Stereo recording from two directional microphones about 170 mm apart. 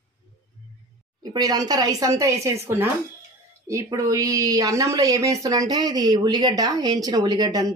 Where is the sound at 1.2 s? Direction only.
25° right (ahead or behind).